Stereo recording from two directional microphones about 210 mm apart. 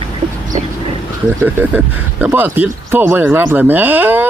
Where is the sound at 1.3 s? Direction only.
10° right (ahead or behind).